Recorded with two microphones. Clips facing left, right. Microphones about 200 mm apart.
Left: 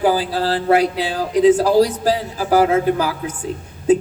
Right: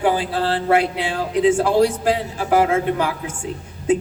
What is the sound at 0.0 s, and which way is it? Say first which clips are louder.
A man's voice: left 2 dB; 35° left (ahead or behind).